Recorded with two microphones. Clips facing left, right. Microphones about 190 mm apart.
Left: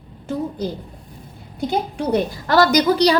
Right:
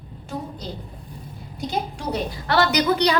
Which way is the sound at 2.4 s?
40° left (ahead or behind).